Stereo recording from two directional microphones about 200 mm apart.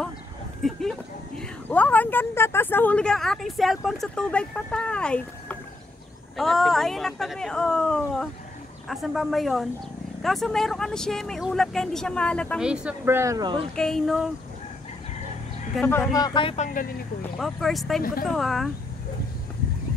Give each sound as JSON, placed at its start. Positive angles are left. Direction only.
{"t": 0.6, "sound": "a sound", "side_deg": 0}
{"t": 1.4, "sound": "speech", "side_deg": 10}
{"t": 12.6, "sound": "speech", "side_deg": -5}
{"t": 13.7, "sound": "speech", "side_deg": 0}
{"t": 15.7, "sound": "speech", "side_deg": 10}
{"t": 17.4, "sound": "speech", "side_deg": 0}